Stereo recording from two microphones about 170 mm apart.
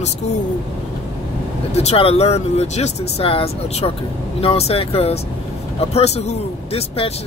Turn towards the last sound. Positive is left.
turn(degrees=35)  # may be behind; listen again after turning